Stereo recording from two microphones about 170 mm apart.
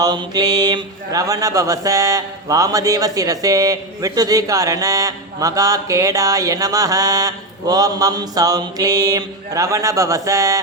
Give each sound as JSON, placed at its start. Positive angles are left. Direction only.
{"t": 0.0, "sound": "speech", "side_deg": -25}